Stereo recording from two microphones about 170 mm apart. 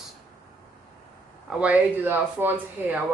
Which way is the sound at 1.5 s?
10° right (ahead or behind).